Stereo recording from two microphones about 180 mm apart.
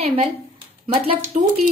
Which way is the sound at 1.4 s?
45° right (ahead or behind).